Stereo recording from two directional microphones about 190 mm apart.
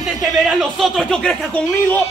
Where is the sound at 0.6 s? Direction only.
Centre (ahead or behind).